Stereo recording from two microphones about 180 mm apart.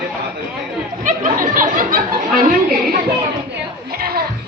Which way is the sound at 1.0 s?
50° right (ahead or behind).